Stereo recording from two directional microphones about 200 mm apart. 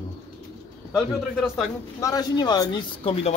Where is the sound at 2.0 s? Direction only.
20° left (ahead or behind).